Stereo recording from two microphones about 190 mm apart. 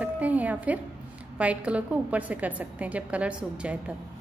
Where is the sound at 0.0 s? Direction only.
10° right (ahead or behind).